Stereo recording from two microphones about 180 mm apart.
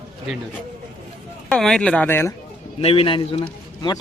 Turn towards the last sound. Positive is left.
turn(degrees=30)  # may be behind; listen again after turning